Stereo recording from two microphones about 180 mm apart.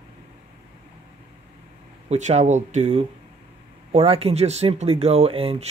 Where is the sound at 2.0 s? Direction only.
40° right (ahead or behind).